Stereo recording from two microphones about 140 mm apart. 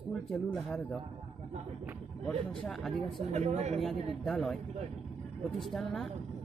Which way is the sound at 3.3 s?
50° right (ahead or behind).